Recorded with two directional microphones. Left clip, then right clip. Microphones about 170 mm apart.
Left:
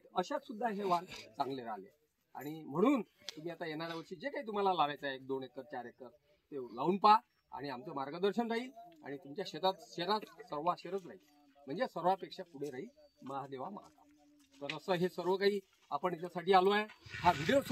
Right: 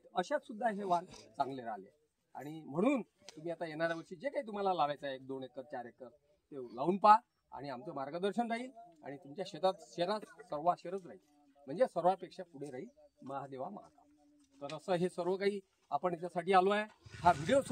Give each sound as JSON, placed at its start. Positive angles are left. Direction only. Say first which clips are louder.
{"t": 0.1, "sound": "speech", "louder": "right 1 dB", "side_deg": -25}
{"t": 0.6, "sound": "speech", "louder": "left 1 dB", "side_deg": -15}
{"t": 1.3, "sound": "speech", "louder": "right 1 dB", "side_deg": -30}
{"t": 10.2, "sound": "speech", "louder": "right 1 dB", "side_deg": -10}
{"t": 10.7, "sound": "speech", "louder": "right 3 dB", "side_deg": -30}